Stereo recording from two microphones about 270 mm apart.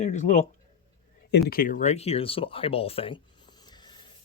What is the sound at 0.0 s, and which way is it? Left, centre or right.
Speech, left.